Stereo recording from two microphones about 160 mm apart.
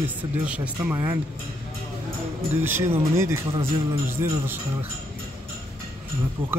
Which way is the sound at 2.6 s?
15° right (ahead or behind).